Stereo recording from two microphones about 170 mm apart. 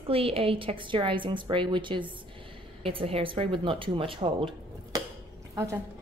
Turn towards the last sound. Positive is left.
turn(degrees=-15)  # may be behind; listen again after turning